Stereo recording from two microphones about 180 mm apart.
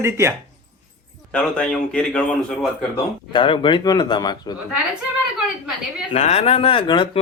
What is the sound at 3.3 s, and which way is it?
Speech, 25° left (ahead or behind).